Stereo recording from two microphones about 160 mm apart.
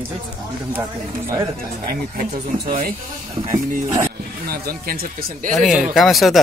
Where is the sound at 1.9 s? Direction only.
70° right (ahead or behind).